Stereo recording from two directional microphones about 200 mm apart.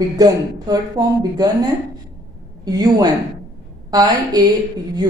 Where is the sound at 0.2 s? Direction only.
20° right (ahead or behind).